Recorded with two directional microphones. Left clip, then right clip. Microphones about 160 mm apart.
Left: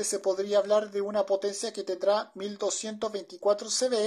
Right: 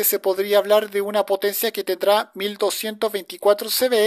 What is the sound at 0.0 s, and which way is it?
Speech, 25° right (ahead or behind).